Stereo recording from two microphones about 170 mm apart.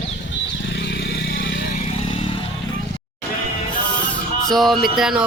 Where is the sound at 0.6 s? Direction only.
90° left.